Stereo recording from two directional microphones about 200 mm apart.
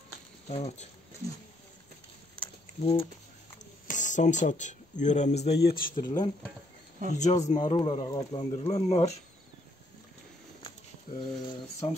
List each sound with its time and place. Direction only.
0.5 s speech: 30° left (ahead or behind)
2.8 s speech: 30° left (ahead or behind)
3.8 s speech: 40° left (ahead or behind)
5.6 s speech: 45° left (ahead or behind)
5.9 s speech: 20° left (ahead or behind)
7.1 s speech: 35° left (ahead or behind)
7.7 s speech: 25° left (ahead or behind)
8.5 s speech: 30° left (ahead or behind)
11.1 s speech: 25° left (ahead or behind)